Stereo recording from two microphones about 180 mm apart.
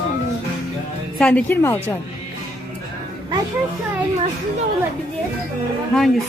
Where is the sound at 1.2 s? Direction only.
5° left (ahead or behind).